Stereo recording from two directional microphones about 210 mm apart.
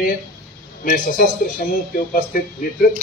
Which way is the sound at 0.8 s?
40° left (ahead or behind).